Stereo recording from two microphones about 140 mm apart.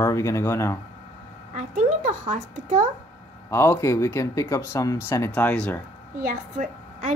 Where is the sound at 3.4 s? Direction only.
20° left (ahead or behind).